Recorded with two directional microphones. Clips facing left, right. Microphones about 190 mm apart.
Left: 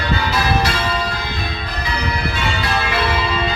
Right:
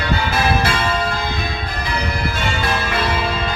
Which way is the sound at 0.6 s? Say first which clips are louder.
Right 1 dB; 50° right (ahead or behind).